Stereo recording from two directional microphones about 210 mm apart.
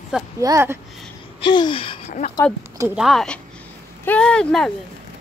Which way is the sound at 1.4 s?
20° left (ahead or behind).